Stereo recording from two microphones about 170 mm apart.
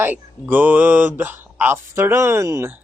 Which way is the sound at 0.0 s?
10° right (ahead or behind).